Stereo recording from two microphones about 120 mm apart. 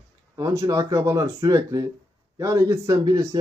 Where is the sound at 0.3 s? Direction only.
25° right (ahead or behind).